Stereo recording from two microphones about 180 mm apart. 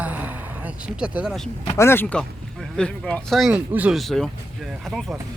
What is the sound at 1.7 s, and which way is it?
Speech, 15° left (ahead or behind).